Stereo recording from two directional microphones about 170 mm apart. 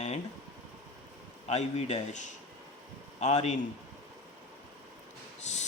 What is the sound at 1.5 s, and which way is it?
Speech, 40° left (ahead or behind).